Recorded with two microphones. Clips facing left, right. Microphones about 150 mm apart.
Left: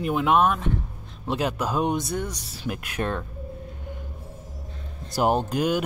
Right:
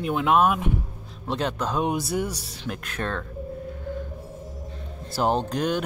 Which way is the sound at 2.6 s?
10° left (ahead or behind).